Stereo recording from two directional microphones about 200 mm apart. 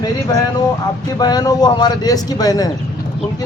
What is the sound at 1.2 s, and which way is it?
Speech, 20° left (ahead or behind).